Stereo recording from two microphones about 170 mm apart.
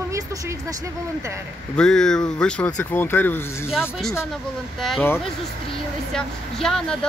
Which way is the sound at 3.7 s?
Centre (ahead or behind).